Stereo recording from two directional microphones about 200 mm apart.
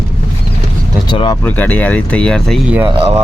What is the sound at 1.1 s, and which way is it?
Speech, 25° left (ahead or behind).